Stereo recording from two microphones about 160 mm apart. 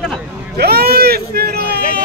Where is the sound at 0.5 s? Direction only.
80° right.